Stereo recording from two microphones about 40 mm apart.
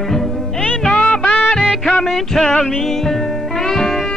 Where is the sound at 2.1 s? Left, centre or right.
Centre.